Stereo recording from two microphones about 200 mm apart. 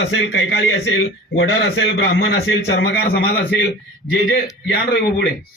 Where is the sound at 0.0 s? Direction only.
70° left (ahead or behind).